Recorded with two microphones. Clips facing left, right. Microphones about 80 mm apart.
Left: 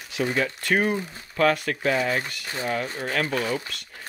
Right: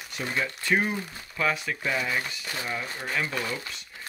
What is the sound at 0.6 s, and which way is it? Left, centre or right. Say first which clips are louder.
Speech: left 2 dB; left.